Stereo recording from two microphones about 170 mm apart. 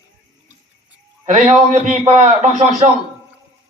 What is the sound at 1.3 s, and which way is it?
Speech, 45° right (ahead or behind).